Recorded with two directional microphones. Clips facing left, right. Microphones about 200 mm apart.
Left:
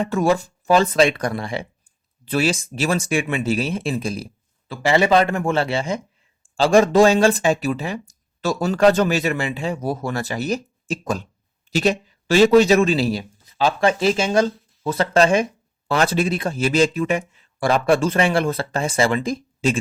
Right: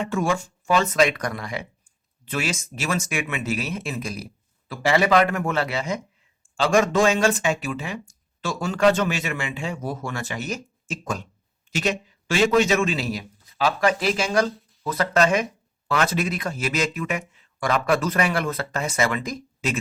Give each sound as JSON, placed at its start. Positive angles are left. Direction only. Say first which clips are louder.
{"t": 0.0, "sound": "speech", "louder": "left 5 dB", "side_deg": 35}